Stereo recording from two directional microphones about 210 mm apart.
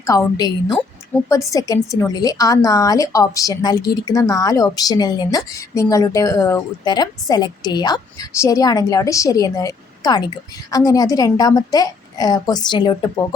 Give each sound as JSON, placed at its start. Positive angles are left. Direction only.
{"t": 0.0, "sound": "a woman's voice", "side_deg": 15}